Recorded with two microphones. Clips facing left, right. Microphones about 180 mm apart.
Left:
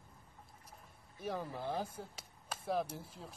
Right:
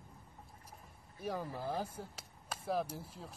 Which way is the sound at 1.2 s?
5° right (ahead or behind).